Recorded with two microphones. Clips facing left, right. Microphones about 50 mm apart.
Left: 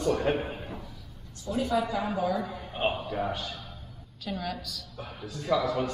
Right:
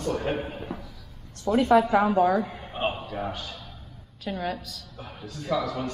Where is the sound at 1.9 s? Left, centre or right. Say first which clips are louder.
Right 8 dB; right.